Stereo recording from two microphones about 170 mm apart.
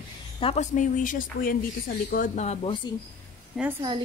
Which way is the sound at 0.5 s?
45° left (ahead or behind).